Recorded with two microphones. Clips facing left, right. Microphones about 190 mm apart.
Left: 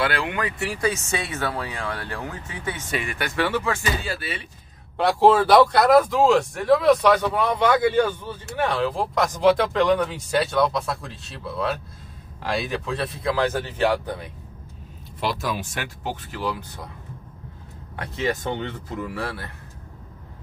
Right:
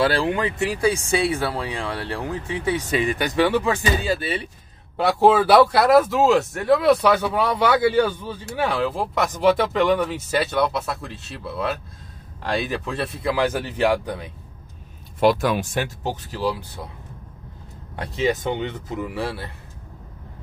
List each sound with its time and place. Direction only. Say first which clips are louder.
0.0 s speech: right 4 dB; 30° right (ahead or behind)
4.9 s speech: even; 5° right (ahead or behind)
15.1 s speech: right 8 dB; 55° right (ahead or behind)
15.7 s speech: right 5 dB; 35° right (ahead or behind)
17.9 s speech: right 3 dB; 25° right (ahead or behind)